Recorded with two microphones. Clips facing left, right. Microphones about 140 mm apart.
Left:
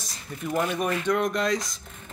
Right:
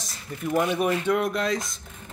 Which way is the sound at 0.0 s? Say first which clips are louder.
Right 1 dB; centre (ahead or behind).